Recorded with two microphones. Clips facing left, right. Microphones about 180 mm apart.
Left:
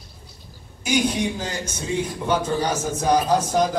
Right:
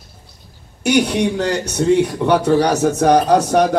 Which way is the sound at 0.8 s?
70° right (ahead or behind).